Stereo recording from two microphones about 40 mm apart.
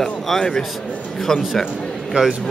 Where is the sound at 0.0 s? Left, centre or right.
Centre.